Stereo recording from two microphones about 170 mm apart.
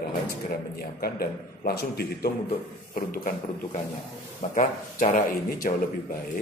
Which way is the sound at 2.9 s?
55° left (ahead or behind).